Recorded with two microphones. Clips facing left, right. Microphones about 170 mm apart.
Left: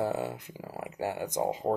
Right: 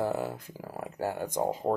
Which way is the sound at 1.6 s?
Centre (ahead or behind).